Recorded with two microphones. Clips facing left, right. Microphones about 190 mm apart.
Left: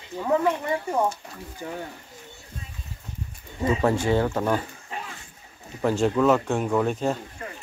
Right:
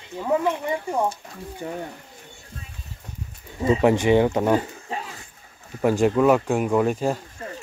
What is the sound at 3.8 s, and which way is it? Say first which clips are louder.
Speech: right 5 dB; 15° right (ahead or behind).